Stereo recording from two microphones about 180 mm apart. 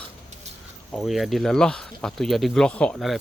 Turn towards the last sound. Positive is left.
turn(degrees=0)  # may be behind; listen again after turning